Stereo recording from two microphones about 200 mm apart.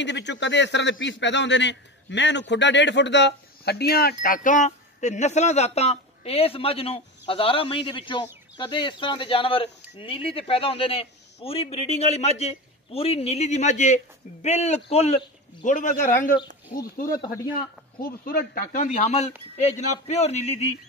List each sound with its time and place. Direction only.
0.0 s a man's voice: 60° left (ahead or behind); by 16.3 s 45° left (ahead or behind)
18.0 s a man's voice: 50° left (ahead or behind); by 20.7 s 35° left (ahead or behind)